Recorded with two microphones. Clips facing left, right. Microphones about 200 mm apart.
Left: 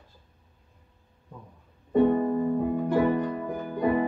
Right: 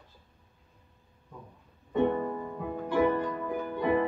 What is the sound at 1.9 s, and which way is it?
Music, 40° left (ahead or behind).